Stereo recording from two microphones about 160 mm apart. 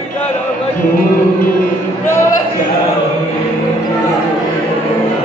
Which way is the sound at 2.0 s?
15° left (ahead or behind).